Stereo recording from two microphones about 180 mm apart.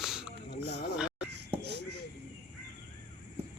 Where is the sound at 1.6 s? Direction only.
70° right (ahead or behind).